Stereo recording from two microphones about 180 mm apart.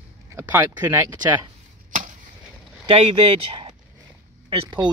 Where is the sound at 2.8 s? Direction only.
30° right (ahead or behind).